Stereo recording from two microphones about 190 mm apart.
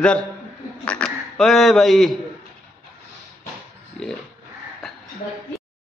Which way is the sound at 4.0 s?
Centre (ahead or behind).